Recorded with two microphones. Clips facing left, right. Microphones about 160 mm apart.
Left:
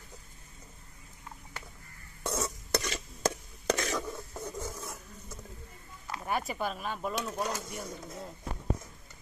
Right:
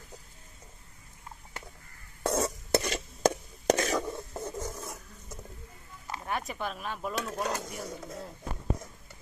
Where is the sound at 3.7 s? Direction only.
45° right (ahead or behind).